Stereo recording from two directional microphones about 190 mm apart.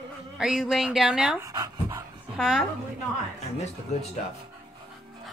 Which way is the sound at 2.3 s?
Centre (ahead or behind).